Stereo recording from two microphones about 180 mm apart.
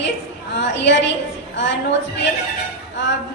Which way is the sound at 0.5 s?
75° left (ahead or behind).